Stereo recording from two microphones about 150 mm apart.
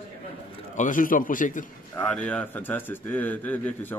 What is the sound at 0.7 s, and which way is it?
Speech, 60° left (ahead or behind).